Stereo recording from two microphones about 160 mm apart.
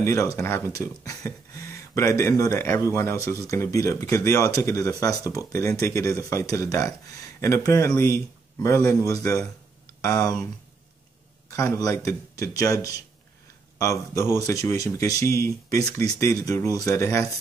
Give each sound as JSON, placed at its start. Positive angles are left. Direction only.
{"t": 0.0, "sound": "speech", "side_deg": 20}
{"t": 9.8, "sound": "a sound", "side_deg": 20}
{"t": 11.5, "sound": "speech", "side_deg": 20}